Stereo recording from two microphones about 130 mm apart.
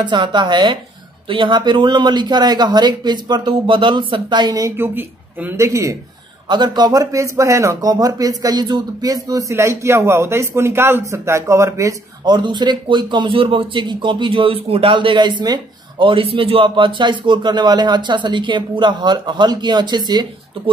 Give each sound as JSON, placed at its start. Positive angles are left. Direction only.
{"t": 0.0, "sound": "a man's voice", "side_deg": -35}
{"t": 6.5, "sound": "a man's voice", "side_deg": -35}